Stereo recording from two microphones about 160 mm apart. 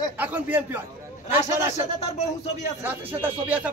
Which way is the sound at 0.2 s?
10° right (ahead or behind).